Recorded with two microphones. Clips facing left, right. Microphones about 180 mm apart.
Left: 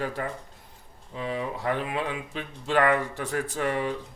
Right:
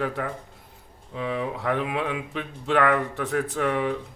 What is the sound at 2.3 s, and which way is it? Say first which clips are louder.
Speech: right 1 dB; 65° right (ahead or behind).